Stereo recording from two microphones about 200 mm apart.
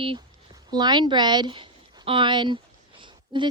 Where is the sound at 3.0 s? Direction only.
25° right (ahead or behind).